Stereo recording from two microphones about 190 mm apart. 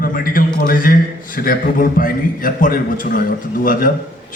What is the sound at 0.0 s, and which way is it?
A man's voice, 50° left (ahead or behind).